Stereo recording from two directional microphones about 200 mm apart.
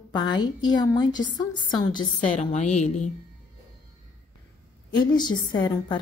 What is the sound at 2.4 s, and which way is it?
Speech, 35° left (ahead or behind).